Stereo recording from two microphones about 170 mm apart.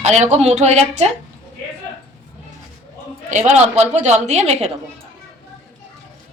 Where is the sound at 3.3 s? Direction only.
40° right (ahead or behind).